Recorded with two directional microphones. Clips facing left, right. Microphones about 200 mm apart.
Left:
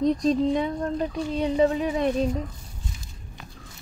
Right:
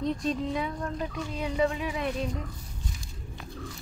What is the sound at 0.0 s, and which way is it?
Speech, 35° left (ahead or behind).